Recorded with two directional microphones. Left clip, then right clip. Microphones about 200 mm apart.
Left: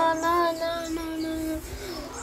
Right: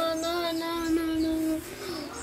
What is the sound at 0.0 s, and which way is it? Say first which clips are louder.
Child singing: left 6 dB; 10° right (ahead or behind).